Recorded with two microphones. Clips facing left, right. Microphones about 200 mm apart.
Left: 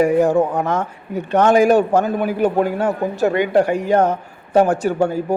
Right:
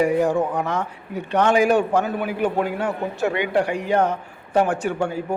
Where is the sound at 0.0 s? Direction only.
45° left (ahead or behind).